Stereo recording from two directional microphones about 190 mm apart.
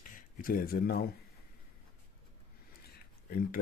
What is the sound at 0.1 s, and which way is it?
Speech, 45° left (ahead or behind).